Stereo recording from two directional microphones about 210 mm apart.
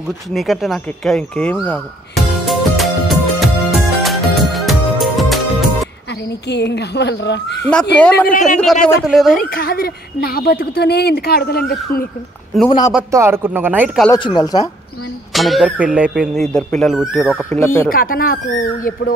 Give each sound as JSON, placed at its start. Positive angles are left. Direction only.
{"t": 0.3, "sound": "speech", "side_deg": 0}
{"t": 2.4, "sound": "music", "side_deg": 0}
{"t": 6.2, "sound": "speech", "side_deg": 55}
{"t": 7.9, "sound": "speech", "side_deg": 5}
{"t": 8.3, "sound": "speech", "side_deg": 35}
{"t": 9.0, "sound": "speech", "side_deg": 0}
{"t": 9.4, "sound": "speech", "side_deg": 45}
{"t": 12.6, "sound": "speech", "side_deg": 20}
{"t": 13.1, "sound": "a man's voice", "side_deg": -10}
{"t": 14.1, "sound": "speech", "side_deg": 20}
{"t": 15.3, "sound": "speech", "side_deg": 0}
{"t": 17.8, "sound": "speech", "side_deg": 45}